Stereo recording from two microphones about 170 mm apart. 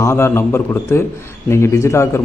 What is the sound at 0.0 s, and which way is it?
A man's voice, 15° left (ahead or behind).